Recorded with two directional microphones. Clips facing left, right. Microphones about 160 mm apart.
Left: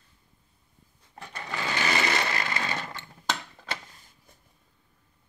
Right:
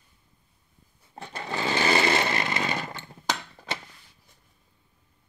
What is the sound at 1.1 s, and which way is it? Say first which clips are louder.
Chainsaw: right 4 dB; 30° right (ahead or behind).